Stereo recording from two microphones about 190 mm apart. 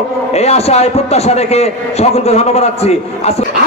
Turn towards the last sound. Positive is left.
turn(degrees=35)  # may be behind; listen again after turning